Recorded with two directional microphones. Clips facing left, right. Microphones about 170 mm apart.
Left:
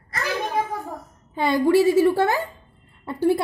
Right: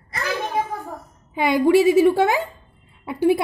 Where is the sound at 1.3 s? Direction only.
15° right (ahead or behind).